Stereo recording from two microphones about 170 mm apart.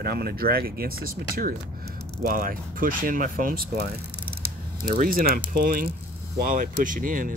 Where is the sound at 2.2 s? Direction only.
55° right (ahead or behind).